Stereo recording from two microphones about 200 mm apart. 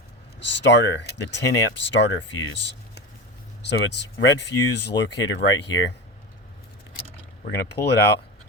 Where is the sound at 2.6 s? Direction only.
60° left (ahead or behind).